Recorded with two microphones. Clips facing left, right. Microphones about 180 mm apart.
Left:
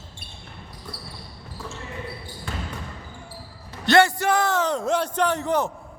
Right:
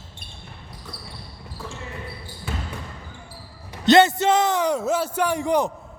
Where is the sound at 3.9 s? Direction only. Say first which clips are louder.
Right 3 dB; 20° right (ahead or behind).